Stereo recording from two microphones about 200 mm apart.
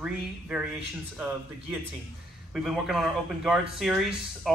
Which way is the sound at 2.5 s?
Centre (ahead or behind).